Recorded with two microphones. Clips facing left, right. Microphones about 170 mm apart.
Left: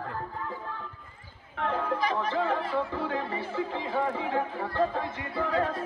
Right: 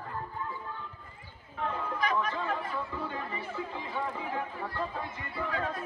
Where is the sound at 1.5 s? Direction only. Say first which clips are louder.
Left 4 dB; 75° left (ahead or behind).